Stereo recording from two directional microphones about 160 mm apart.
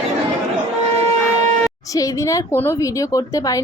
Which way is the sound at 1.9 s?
20° left (ahead or behind).